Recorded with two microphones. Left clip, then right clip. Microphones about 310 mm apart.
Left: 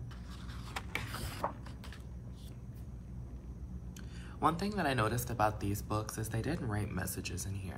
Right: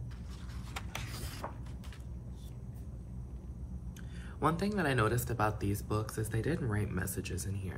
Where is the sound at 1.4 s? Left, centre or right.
Centre.